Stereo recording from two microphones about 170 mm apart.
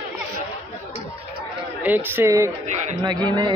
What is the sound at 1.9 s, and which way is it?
A man's voice, 10° right (ahead or behind).